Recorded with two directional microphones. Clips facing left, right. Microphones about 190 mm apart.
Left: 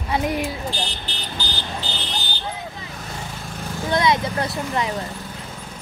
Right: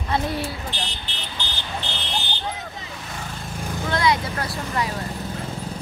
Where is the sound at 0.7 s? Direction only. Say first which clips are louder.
Left 4 dB; 35° left (ahead or behind).